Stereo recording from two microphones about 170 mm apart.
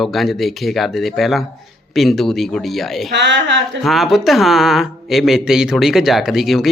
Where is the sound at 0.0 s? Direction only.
Centre (ahead or behind).